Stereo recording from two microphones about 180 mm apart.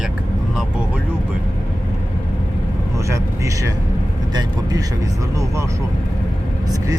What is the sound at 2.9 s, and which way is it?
Speech, 15° right (ahead or behind).